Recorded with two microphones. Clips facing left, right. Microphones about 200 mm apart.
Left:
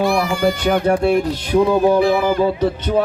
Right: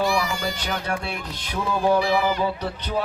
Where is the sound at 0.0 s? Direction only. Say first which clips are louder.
Left 7 dB; 55° left (ahead or behind).